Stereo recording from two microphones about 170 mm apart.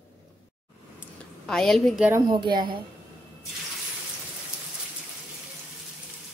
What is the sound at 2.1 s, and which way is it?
Speech, 20° right (ahead or behind).